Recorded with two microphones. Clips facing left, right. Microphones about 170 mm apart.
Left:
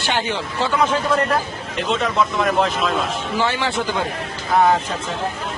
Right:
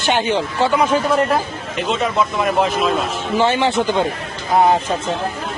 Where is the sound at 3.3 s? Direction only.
20° right (ahead or behind).